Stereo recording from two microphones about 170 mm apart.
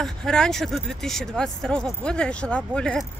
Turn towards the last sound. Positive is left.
turn(degrees=5)  # may be behind; listen again after turning